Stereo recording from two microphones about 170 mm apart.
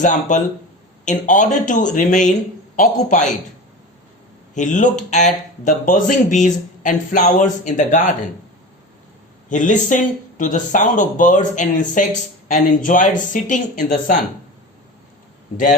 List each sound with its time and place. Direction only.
0.0 s speech: 45° left (ahead or behind)
4.5 s speech: 45° left (ahead or behind)
9.5 s speech: 50° left (ahead or behind)